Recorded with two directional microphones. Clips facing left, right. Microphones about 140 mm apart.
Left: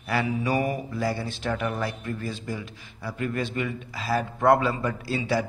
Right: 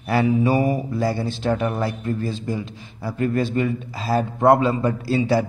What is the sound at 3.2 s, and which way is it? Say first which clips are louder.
A man's voice: right 8 dB; 35° right (ahead or behind).